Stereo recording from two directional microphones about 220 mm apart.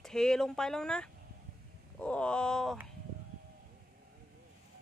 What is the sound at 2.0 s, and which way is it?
Wail, 5° left (ahead or behind).